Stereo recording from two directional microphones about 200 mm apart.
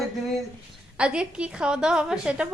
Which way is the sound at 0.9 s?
5° right (ahead or behind).